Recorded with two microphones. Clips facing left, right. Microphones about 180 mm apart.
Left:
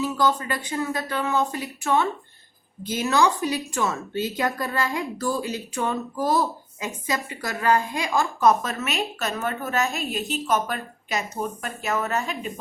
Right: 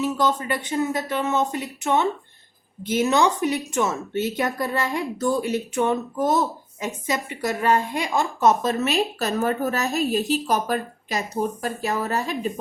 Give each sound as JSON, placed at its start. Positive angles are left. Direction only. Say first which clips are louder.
{"t": 0.0, "sound": "a woman's voice", "louder": "right 1 dB", "side_deg": -20}